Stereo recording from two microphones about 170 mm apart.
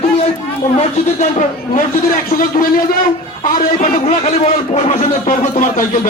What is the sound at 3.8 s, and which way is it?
Speech, 40° left (ahead or behind).